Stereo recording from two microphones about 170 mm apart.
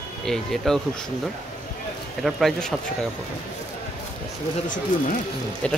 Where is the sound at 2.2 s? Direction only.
Centre (ahead or behind).